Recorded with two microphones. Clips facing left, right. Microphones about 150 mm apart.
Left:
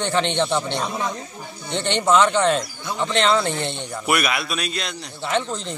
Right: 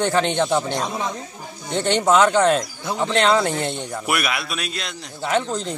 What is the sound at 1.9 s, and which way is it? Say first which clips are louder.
Speech: right 1 dB; 40° right (ahead or behind).